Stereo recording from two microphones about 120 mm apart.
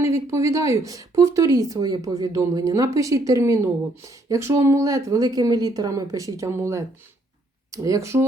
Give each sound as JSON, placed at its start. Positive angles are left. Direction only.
{"t": 0.0, "sound": "speech", "side_deg": -25}